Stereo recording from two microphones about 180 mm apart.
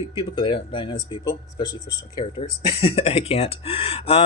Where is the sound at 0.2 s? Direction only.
25° left (ahead or behind).